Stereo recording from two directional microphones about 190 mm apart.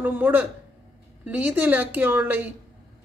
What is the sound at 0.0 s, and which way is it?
Speech, 10° right (ahead or behind).